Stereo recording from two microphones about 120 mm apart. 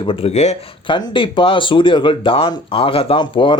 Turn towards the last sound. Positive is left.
turn(degrees=45)  # may be behind; listen again after turning